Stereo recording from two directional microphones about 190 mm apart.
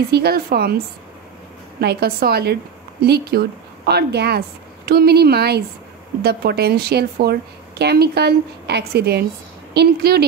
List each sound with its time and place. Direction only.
0.1 s a woman's voice: 55° right (ahead or behind)